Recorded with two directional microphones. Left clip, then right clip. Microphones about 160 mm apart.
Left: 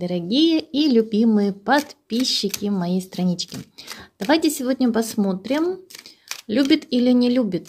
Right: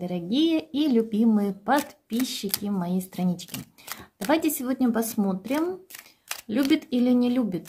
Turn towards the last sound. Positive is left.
turn(degrees=30)  # may be behind; listen again after turning